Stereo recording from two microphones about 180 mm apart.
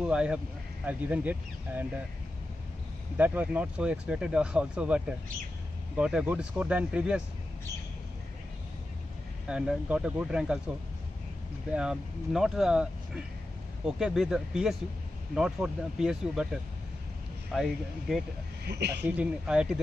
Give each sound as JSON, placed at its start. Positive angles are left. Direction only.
{"t": 0.0, "sound": "speech", "side_deg": -5}
{"t": 3.2, "sound": "speech", "side_deg": -10}
{"t": 9.5, "sound": "speech", "side_deg": -5}
{"t": 11.7, "sound": "speech", "side_deg": -5}
{"t": 17.5, "sound": "speech", "side_deg": 0}
{"t": 18.6, "sound": "a woman's voice", "side_deg": -65}
{"t": 19.0, "sound": "speech", "side_deg": -5}